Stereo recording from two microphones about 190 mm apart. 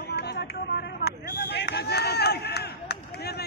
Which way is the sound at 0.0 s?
60° left (ahead or behind).